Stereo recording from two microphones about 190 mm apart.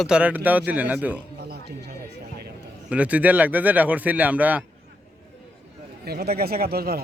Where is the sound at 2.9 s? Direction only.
5° right (ahead or behind).